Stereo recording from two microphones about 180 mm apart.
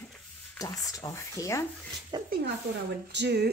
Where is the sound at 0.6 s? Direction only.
20° left (ahead or behind).